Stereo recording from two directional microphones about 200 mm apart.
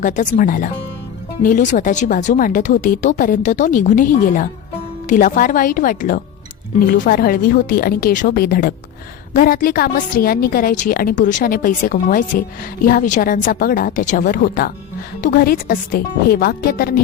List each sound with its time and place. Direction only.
0.0 s a woman's voice: 40° left (ahead or behind)